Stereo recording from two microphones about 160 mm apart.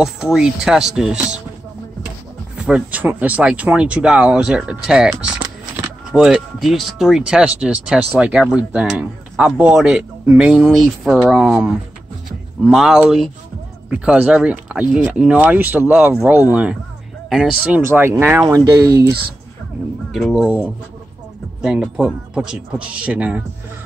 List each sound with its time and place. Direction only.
0.0 s speech: 5° right (ahead or behind)
2.5 s a man's voice: 5° right (ahead or behind)
20.1 s speech: centre (ahead or behind)